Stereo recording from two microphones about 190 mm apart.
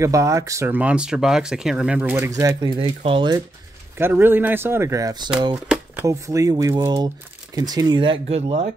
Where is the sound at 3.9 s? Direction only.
10° right (ahead or behind).